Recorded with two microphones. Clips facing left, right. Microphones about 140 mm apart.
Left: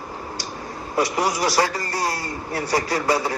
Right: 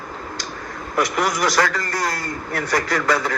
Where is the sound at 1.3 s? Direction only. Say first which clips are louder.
Right 1 dB; 10° left (ahead or behind).